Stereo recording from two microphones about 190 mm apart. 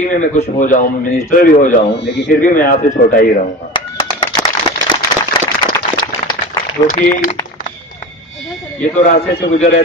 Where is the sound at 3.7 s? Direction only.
25° left (ahead or behind).